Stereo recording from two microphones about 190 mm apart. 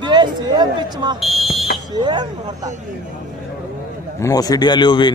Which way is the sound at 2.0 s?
25° right (ahead or behind).